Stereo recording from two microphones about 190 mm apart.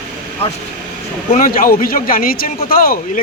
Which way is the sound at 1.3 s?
45° left (ahead or behind).